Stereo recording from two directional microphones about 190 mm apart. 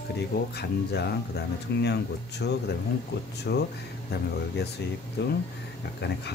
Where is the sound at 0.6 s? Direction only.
60° left (ahead or behind).